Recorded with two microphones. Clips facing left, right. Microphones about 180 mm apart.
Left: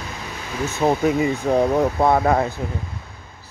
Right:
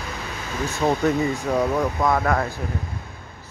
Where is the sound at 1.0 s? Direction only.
15° left (ahead or behind).